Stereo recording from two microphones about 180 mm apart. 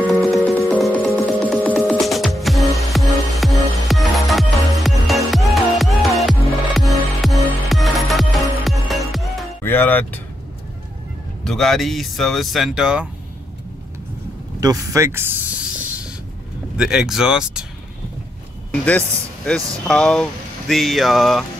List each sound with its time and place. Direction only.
0.0 s music: 5° left (ahead or behind)
9.6 s music: 10° left (ahead or behind)
11.4 s speech: centre (ahead or behind)
14.6 s speech: 20° right (ahead or behind)
16.7 s speech: 5° right (ahead or behind)
18.7 s speech: 10° left (ahead or behind)